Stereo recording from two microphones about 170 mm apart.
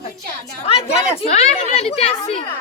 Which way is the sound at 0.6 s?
35° left (ahead or behind).